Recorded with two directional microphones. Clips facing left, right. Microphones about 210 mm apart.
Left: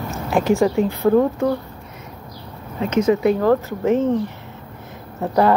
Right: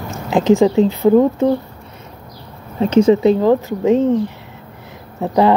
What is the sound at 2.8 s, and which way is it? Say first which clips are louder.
Speech: right 5 dB; 30° right (ahead or behind).